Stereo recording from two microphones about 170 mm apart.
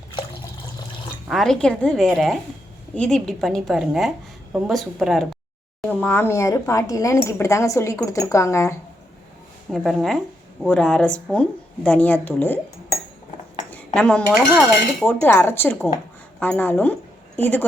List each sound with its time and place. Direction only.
1.3 s a woman's voice: centre (ahead or behind); by 8.7 s 15° left (ahead or behind)
9.7 s a woman's voice: centre (ahead or behind)
13.9 s speech: 5° left (ahead or behind)